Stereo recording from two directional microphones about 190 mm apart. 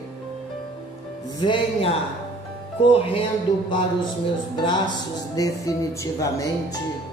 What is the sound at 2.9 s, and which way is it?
Speech, 30° left (ahead or behind).